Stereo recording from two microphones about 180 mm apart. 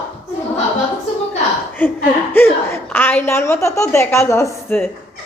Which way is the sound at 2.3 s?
10° left (ahead or behind).